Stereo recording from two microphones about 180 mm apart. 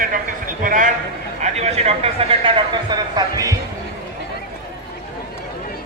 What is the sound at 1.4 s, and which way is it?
A man's voice, 35° right (ahead or behind).